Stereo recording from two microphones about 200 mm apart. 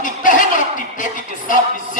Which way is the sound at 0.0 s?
40° left (ahead or behind).